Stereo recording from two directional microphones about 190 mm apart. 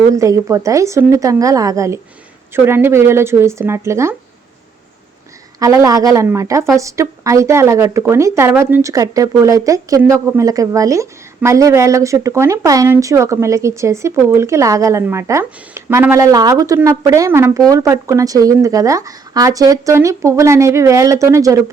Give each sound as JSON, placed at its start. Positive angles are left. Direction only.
{"t": 0.1, "sound": "a woman's voice", "side_deg": -15}
{"t": 5.5, "sound": "a woman's voice", "side_deg": -15}